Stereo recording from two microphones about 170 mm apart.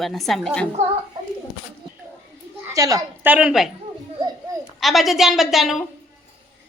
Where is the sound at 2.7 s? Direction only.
20° right (ahead or behind).